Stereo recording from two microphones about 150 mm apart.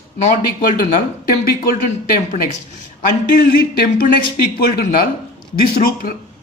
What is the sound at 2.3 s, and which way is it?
Speech, 65° left (ahead or behind).